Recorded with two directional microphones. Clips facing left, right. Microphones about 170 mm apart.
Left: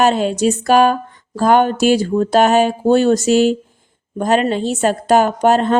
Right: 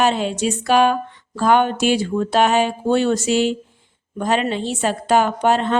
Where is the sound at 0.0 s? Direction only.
45° left (ahead or behind).